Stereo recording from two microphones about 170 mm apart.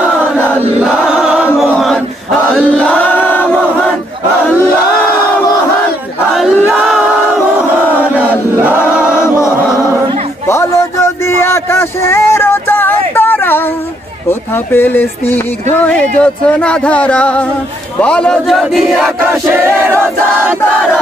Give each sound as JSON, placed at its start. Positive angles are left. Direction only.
{"t": 0.7, "sound": "choir", "side_deg": -5}
{"t": 1.6, "sound": "chant", "side_deg": 0}
{"t": 6.3, "sound": "crowd", "side_deg": 0}
{"t": 7.9, "sound": "chant", "side_deg": 10}
{"t": 8.5, "sound": "choir", "side_deg": -10}
{"t": 9.1, "sound": "chant", "side_deg": 15}
{"t": 11.2, "sound": "a sound", "side_deg": 15}
{"t": 14.7, "sound": "a sound", "side_deg": 10}
{"t": 18.0, "sound": "chant", "side_deg": 5}
{"t": 19.5, "sound": "choir", "side_deg": -15}